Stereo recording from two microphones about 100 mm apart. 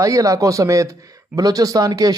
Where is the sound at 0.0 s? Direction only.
35° right (ahead or behind).